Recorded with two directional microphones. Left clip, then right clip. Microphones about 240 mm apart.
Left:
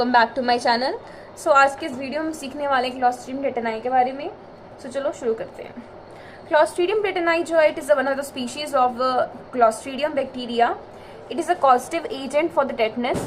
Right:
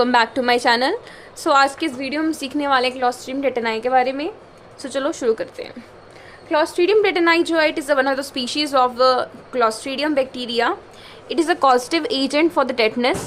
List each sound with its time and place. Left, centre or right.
0.0 s a woman's voice: right